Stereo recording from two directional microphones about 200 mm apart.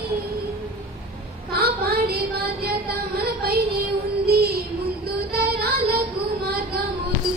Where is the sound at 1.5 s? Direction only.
50° right (ahead or behind).